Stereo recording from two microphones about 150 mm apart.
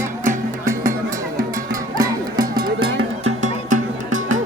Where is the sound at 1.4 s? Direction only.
25° right (ahead or behind).